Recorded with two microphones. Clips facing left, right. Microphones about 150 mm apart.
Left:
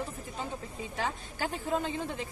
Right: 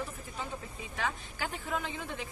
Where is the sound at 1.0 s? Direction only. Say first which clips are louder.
Left 2 dB; 30° left (ahead or behind).